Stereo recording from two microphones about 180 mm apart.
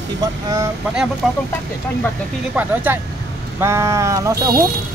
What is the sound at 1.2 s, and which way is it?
Speech, centre (ahead or behind).